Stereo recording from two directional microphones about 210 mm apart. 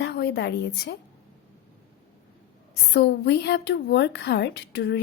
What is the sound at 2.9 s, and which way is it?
A woman's voice, 55° left (ahead or behind).